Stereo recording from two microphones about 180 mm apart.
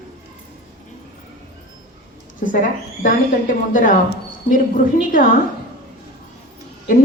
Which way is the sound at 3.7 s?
50° left (ahead or behind).